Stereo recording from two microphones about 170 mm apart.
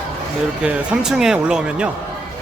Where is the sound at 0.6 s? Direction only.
5° right (ahead or behind).